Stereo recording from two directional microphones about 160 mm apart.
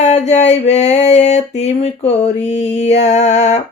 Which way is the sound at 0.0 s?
45° left (ahead or behind).